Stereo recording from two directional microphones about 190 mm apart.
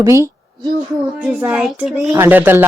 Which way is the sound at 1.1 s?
5° right (ahead or behind).